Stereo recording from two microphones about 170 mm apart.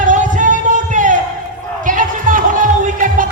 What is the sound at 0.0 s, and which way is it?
Music, 45° right (ahead or behind).